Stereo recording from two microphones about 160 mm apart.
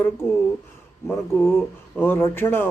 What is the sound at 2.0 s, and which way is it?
Speech, 10° left (ahead or behind).